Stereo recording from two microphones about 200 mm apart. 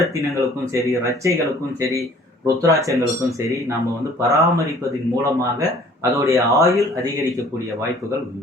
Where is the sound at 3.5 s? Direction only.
15° right (ahead or behind).